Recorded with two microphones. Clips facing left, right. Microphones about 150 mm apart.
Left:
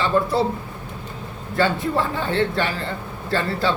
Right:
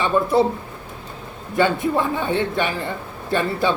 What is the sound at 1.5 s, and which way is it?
Speech, 15° right (ahead or behind).